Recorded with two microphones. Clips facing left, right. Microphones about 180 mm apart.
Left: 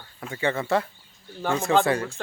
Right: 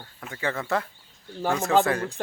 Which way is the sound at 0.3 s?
Centre (ahead or behind).